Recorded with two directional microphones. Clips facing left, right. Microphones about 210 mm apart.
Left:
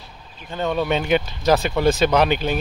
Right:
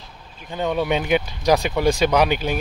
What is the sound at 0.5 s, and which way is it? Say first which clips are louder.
Speech: even; 15° right (ahead or behind).